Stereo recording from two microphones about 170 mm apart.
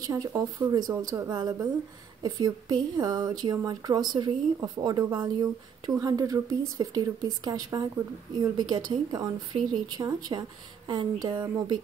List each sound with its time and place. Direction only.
0.0 s a woman's voice: 20° right (ahead or behind)